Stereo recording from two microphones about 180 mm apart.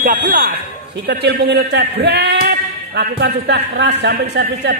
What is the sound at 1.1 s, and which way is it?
A man's voice, 70° right (ahead or behind).